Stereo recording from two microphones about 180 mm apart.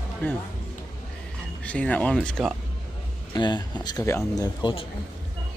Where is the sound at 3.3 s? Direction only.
25° left (ahead or behind).